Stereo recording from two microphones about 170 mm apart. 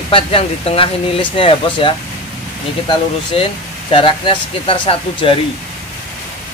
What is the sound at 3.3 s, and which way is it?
Speech, 35° left (ahead or behind).